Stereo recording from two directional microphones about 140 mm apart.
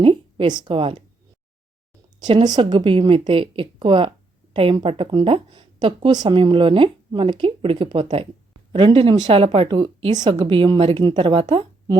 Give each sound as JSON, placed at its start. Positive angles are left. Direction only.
{"t": 0.0, "sound": "a woman's voice", "side_deg": -40}
{"t": 2.1, "sound": "speech", "side_deg": -30}